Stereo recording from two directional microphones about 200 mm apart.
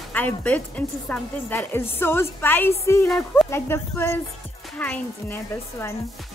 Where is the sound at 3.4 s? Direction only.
10° left (ahead or behind).